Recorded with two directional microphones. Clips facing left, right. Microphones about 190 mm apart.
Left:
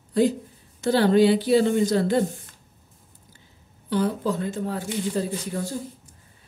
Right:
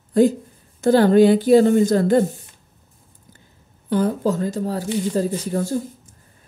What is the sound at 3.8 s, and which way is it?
Speech, 45° right (ahead or behind).